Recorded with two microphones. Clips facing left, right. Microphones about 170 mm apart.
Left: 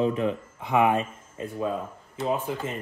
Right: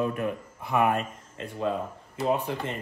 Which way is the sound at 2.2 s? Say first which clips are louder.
Right 1 dB; centre (ahead or behind).